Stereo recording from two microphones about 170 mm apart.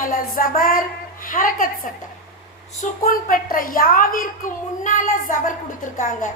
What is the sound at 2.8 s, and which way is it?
A woman's voice, 55° left (ahead or behind).